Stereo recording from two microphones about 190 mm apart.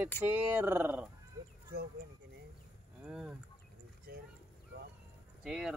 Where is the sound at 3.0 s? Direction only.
5° right (ahead or behind).